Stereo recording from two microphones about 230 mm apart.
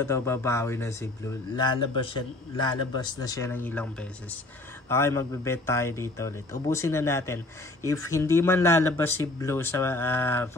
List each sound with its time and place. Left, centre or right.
0.0 s speech: centre